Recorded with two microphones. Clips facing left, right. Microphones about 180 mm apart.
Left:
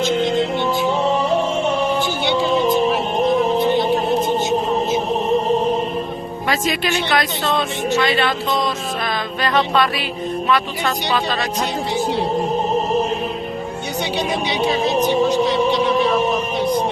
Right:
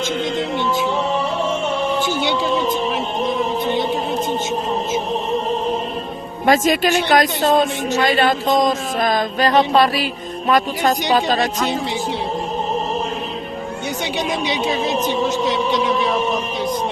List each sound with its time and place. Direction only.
6.4 s speech: 45° right (ahead or behind)